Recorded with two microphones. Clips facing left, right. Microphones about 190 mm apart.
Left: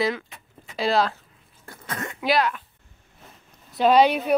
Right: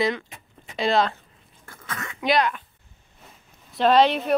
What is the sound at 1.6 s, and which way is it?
Cough, 20° left (ahead or behind).